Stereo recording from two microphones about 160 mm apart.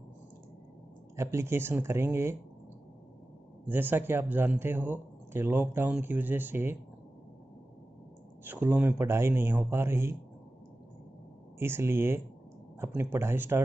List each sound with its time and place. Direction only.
1.1 s speech: 15° right (ahead or behind)
3.6 s speech: 10° right (ahead or behind)
8.5 s speech: 10° right (ahead or behind)
11.5 s speech: 15° right (ahead or behind)